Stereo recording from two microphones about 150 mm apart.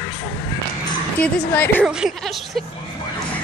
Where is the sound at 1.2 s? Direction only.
10° left (ahead or behind).